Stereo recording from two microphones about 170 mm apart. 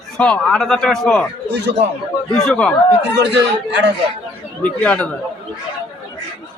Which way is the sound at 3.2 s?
90° right.